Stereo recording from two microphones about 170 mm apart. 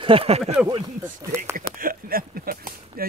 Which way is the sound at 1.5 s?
55° right (ahead or behind).